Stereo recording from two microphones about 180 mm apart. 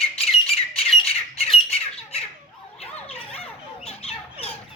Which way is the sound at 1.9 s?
35° left (ahead or behind).